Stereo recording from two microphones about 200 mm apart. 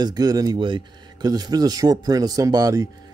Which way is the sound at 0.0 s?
20° right (ahead or behind).